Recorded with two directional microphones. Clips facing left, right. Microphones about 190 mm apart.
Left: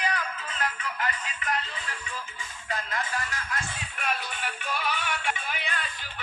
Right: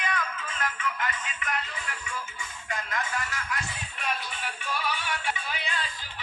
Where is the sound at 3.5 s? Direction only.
50° left (ahead or behind).